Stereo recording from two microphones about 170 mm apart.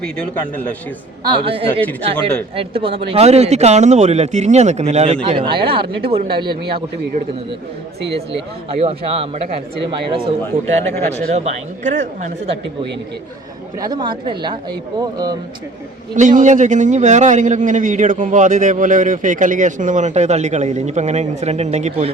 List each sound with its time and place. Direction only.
0.0 s a man's voice: 5° left (ahead or behind)
1.2 s speech: 30° right (ahead or behind)
8.8 s speech: 35° right (ahead or behind)
10.5 s a man's voice: 40° right (ahead or behind)
13.8 s speech: 25° right (ahead or behind)
16.1 s a man's voice: 45° right (ahead or behind)